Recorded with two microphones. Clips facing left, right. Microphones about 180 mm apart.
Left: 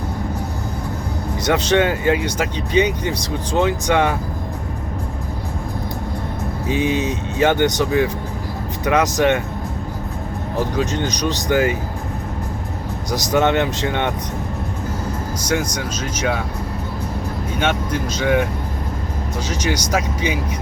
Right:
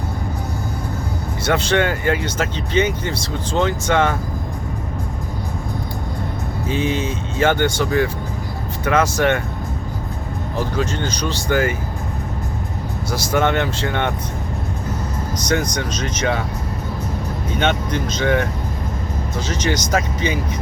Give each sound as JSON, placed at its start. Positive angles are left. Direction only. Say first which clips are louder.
{"t": 1.5, "sound": "speech", "louder": "left 1 dB", "side_deg": 20}
{"t": 6.7, "sound": "speech", "louder": "left 2 dB", "side_deg": 15}
{"t": 10.8, "sound": "speech", "louder": "left 1 dB", "side_deg": 15}
{"t": 13.1, "sound": "speech", "louder": "left 2 dB", "side_deg": 20}
{"t": 15.4, "sound": "speech", "louder": "right 1 dB", "side_deg": 5}
{"t": 17.6, "sound": "speech", "louder": "right 1 dB", "side_deg": 5}
{"t": 19.5, "sound": "speech", "louder": "right 1 dB", "side_deg": 10}